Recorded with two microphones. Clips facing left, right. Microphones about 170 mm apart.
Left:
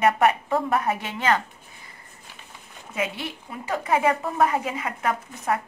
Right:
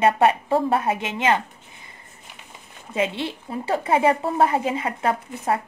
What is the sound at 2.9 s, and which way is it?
A woman's voice, 25° right (ahead or behind).